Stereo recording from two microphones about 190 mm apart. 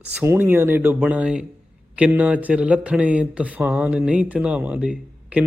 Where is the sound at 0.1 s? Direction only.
10° right (ahead or behind).